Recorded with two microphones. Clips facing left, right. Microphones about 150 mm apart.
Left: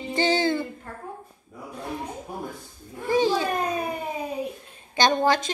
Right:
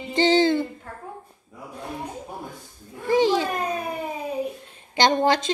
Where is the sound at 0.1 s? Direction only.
20° right (ahead or behind).